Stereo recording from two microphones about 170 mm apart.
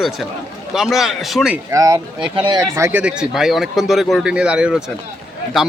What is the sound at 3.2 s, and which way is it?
Speech, centre (ahead or behind).